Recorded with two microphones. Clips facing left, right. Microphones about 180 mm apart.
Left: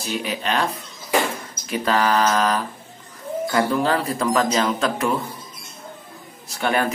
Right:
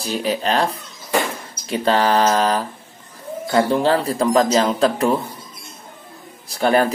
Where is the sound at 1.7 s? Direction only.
30° right (ahead or behind).